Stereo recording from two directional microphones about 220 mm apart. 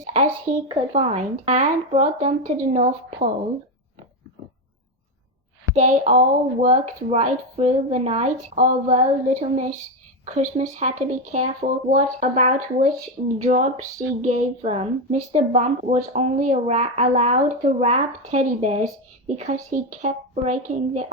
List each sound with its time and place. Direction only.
0.0 s a sound: 30° right (ahead or behind)
0.7 s speech: 30° right (ahead or behind)
5.7 s speech: 35° right (ahead or behind)